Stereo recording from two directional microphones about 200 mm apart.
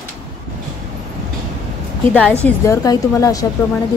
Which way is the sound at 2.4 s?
15° left (ahead or behind).